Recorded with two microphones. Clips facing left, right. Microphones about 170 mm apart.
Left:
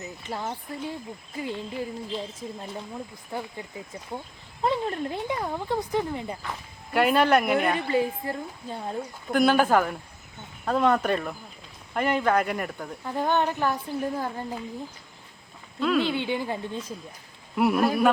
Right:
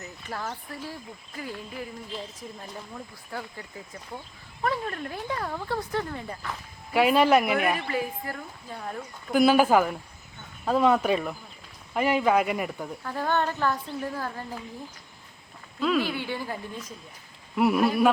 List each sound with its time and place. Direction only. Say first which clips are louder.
0.0 s speech: left 2 dB; 20° left (ahead or behind)
6.9 s speech: right 1 dB; centre (ahead or behind)
7.8 s speech: left 5 dB; 25° left (ahead or behind)
9.3 s speech: right 1 dB; 5° right (ahead or behind)
13.1 s speech: left 2 dB; 20° left (ahead or behind)
15.8 s speech: left 1 dB; centre (ahead or behind)
16.0 s speech: left 4 dB; 20° left (ahead or behind)
17.5 s speech: even; centre (ahead or behind)